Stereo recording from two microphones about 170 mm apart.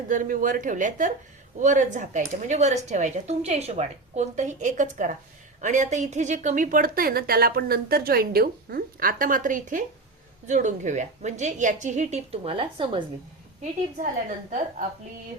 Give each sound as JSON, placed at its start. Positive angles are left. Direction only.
{"t": 0.1, "sound": "a woman's voice", "side_deg": -50}
{"t": 13.6, "sound": "speech", "side_deg": -45}